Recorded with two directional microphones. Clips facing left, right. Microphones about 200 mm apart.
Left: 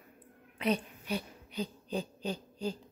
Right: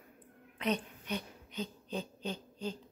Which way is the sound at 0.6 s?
10° left (ahead or behind).